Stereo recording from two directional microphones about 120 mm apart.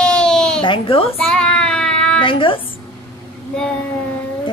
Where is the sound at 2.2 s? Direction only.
45° left (ahead or behind).